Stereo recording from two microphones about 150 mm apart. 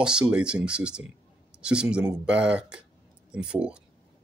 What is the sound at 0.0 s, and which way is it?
Speech, 5° right (ahead or behind).